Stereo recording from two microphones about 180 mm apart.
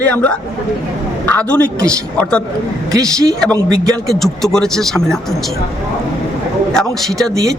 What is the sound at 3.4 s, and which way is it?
A man's voice, centre (ahead or behind).